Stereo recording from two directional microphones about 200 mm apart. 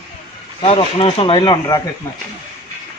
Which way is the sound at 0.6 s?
30° left (ahead or behind).